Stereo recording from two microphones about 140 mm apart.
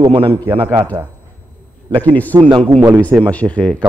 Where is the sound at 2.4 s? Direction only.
35° right (ahead or behind).